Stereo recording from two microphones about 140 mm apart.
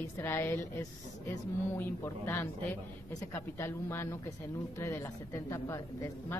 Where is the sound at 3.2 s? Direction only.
20° left (ahead or behind).